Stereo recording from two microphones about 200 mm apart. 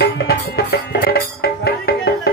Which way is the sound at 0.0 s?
55° left (ahead or behind).